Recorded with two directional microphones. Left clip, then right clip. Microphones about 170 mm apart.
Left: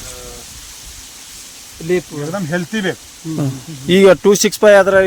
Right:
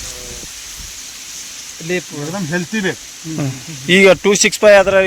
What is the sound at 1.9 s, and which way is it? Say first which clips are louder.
Speech: left 3 dB; 80° left.